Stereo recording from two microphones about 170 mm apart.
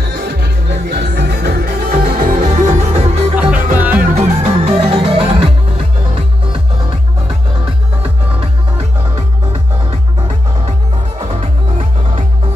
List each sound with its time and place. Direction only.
0.0 s music: 70° right (ahead or behind); by 3.3 s 40° right (ahead or behind)
3.7 s music: 10° right (ahead or behind)
4.1 s music: 35° right (ahead or behind)
11.2 s music: 35° right (ahead or behind)